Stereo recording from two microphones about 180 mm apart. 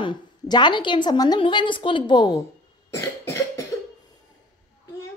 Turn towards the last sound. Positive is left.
turn(degrees=15)  # may be behind; listen again after turning